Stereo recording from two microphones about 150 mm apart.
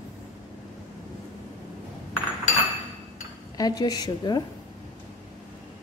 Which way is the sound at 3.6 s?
25° left (ahead or behind).